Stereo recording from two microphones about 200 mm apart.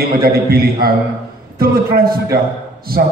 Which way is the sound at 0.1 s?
50° right (ahead or behind).